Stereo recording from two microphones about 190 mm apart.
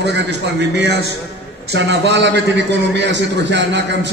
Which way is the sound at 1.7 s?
65° right (ahead or behind).